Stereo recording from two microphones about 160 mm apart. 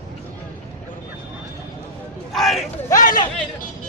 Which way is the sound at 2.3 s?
Centre (ahead or behind).